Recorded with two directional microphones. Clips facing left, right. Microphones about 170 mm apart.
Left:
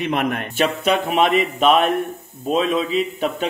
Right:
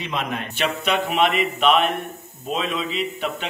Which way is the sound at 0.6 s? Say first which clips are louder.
Left 4 dB; 40° left (ahead or behind).